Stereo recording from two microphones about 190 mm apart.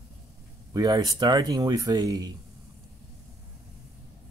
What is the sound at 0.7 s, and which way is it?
Speech, 20° right (ahead or behind).